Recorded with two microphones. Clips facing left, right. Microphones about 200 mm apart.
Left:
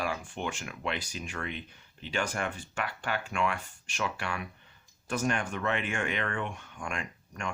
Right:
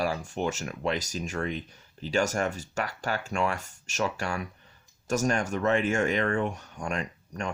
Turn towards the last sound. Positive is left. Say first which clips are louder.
# right 4 dB
turn(degrees=-40)  # may be behind; listen again after turning